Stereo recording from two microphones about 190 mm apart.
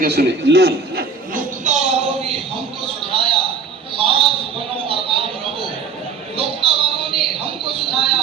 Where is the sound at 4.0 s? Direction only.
30° right (ahead or behind).